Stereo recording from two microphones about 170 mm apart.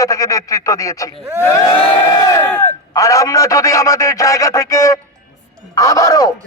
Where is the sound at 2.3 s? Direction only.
15° left (ahead or behind).